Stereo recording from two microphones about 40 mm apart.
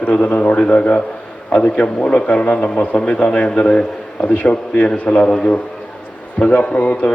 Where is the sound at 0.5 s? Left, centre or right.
Left.